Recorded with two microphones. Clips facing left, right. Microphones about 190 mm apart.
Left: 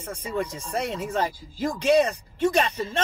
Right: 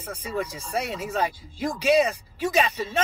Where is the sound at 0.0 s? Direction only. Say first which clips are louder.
Left 1 dB; 5° right (ahead or behind).